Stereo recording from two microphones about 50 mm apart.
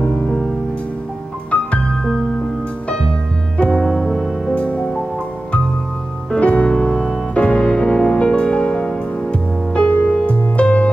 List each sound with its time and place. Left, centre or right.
0.0 s music: left
3.5 s music: left
6.3 s music: left